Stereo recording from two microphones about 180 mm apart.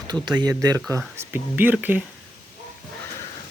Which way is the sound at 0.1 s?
25° right (ahead or behind).